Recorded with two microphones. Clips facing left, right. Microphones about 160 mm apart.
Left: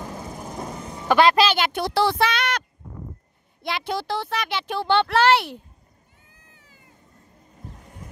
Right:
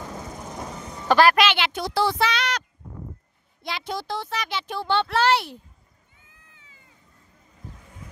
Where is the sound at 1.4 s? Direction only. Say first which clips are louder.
Left 2 dB; 40° left (ahead or behind).